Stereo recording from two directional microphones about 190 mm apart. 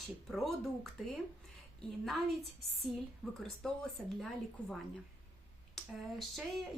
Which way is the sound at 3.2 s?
5° left (ahead or behind).